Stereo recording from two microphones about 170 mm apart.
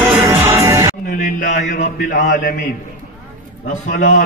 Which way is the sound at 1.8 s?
50° left (ahead or behind).